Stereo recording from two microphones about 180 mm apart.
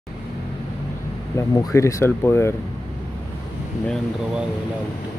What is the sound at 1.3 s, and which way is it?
Speech, 20° left (ahead or behind).